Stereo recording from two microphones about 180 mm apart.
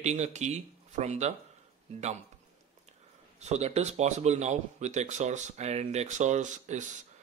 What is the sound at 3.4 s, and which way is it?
Speech, 35° right (ahead or behind).